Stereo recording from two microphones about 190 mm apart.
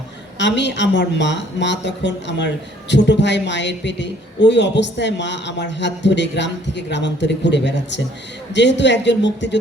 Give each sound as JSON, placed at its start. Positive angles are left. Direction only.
{"t": 0.3, "sound": "speech", "side_deg": 70}